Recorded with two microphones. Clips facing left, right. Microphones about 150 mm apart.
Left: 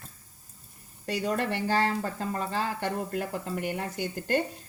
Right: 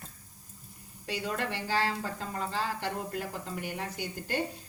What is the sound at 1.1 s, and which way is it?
Speech, 45° left (ahead or behind).